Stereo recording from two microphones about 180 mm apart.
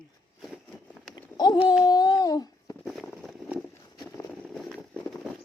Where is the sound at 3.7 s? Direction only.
20° left (ahead or behind).